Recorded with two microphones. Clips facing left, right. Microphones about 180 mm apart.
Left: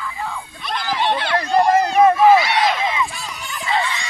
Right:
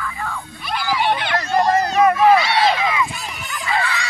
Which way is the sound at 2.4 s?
30° right (ahead or behind).